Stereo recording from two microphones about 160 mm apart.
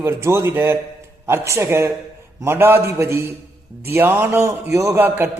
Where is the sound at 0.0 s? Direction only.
15° right (ahead or behind).